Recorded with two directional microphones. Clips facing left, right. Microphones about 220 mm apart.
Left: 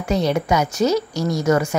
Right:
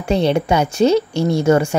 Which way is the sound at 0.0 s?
30° right (ahead or behind).